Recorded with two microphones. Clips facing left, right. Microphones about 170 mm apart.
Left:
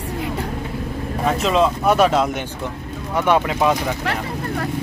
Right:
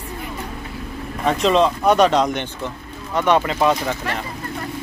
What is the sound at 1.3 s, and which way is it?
Speech, 5° left (ahead or behind).